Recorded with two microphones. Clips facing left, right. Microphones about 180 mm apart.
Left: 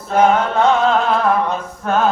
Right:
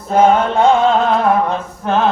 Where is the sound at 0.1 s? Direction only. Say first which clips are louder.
Right 2 dB; 30° right (ahead or behind).